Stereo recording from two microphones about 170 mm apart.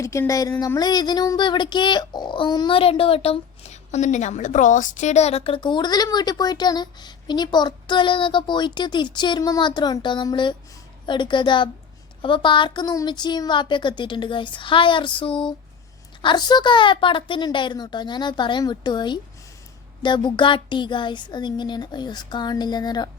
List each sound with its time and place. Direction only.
0.0 s speech: 15° left (ahead or behind)